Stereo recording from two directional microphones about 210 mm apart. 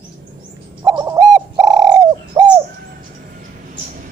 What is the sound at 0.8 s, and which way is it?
Bird, 15° right (ahead or behind).